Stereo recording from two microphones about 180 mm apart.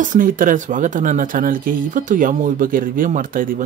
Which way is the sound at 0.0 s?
50° right (ahead or behind).